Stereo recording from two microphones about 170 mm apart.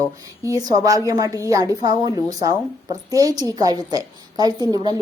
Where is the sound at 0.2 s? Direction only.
20° right (ahead or behind).